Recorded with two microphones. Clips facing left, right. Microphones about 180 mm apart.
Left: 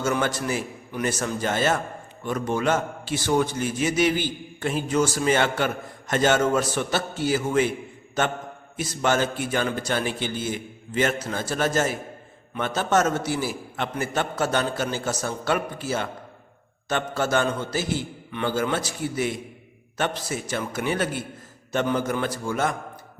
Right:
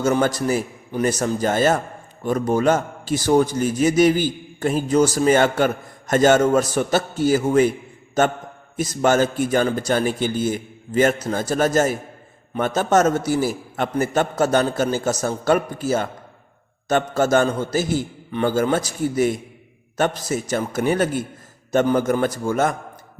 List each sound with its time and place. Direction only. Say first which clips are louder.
0.0 s a man's voice: right 6 dB; 40° right (ahead or behind)